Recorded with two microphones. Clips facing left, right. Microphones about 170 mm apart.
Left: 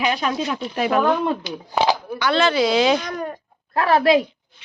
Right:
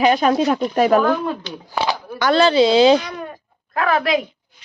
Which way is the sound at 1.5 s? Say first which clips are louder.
Left 3 dB; 10° left (ahead or behind).